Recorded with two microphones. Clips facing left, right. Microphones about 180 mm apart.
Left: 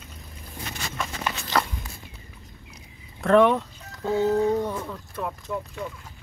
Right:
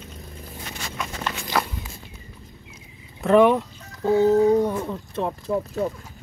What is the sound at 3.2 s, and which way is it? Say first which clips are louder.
Chicken: right 2 dB; 5° right (ahead or behind).